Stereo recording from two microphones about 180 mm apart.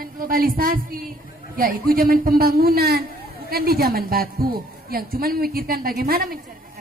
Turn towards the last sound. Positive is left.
turn(degrees=-55)  # may be behind; listen again after turning